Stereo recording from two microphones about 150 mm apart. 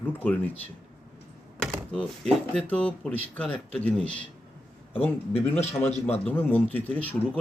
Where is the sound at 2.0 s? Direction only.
10° left (ahead or behind).